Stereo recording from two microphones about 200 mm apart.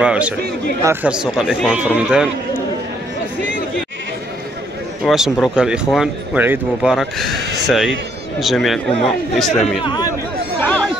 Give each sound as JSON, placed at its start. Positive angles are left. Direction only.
{"t": 0.0, "sound": "speech", "side_deg": -5}
{"t": 5.0, "sound": "speech", "side_deg": 0}
{"t": 9.8, "sound": "speech", "side_deg": 20}